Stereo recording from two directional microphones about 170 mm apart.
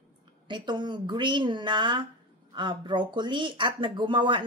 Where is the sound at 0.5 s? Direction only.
25° right (ahead or behind).